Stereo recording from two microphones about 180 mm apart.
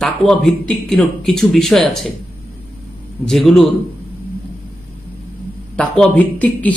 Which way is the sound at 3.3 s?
Centre (ahead or behind).